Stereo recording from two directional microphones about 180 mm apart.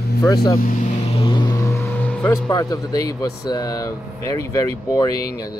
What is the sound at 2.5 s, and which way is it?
Speech, 20° left (ahead or behind).